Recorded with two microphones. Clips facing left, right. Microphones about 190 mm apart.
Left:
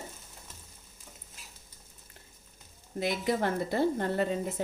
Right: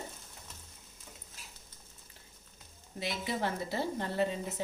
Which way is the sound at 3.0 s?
50° left (ahead or behind).